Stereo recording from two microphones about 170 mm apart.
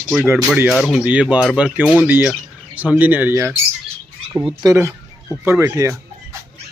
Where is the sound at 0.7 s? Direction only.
Centre (ahead or behind); by 6.0 s 15° right (ahead or behind).